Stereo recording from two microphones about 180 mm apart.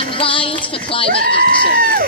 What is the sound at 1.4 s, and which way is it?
Speech, 55° right (ahead or behind).